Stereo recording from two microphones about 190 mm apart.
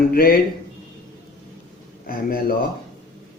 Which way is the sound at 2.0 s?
50° left (ahead or behind).